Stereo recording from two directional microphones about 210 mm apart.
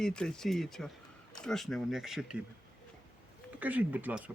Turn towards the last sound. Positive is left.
turn(degrees=-5)  # may be behind; listen again after turning